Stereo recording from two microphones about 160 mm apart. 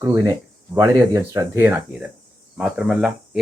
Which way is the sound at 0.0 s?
20° right (ahead or behind).